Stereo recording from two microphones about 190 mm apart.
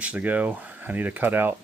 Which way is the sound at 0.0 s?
5° right (ahead or behind).